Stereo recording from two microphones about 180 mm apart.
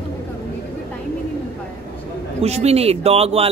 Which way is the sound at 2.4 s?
35° right (ahead or behind).